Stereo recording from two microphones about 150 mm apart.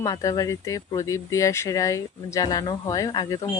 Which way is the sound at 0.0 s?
25° left (ahead or behind).